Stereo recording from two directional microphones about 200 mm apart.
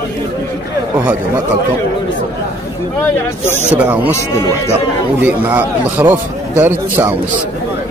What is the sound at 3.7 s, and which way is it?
Speech, 5° right (ahead or behind).